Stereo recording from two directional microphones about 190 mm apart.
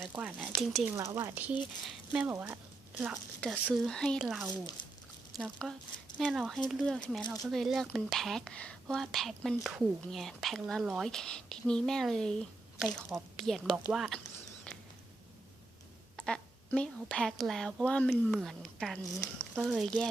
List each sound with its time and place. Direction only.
0.0 s speech: 10° right (ahead or behind)
0.9 s speech: 15° right (ahead or behind); by 14.2 s centre (ahead or behind)
16.1 s speech: 5° left (ahead or behind)